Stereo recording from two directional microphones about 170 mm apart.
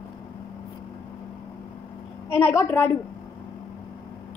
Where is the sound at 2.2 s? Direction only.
15° left (ahead or behind).